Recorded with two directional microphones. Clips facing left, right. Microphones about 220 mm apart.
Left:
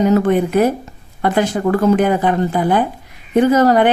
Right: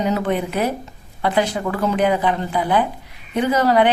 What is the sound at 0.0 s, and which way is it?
A woman's voice, 45° left (ahead or behind).